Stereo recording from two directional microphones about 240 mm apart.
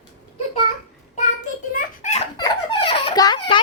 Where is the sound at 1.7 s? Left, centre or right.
Left.